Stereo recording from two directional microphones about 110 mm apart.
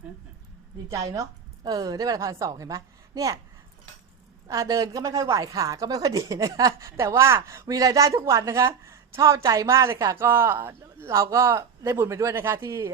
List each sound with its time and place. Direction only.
0.9 s a woman's voice: 30° right (ahead or behind)
4.4 s a woman's voice: 30° right (ahead or behind)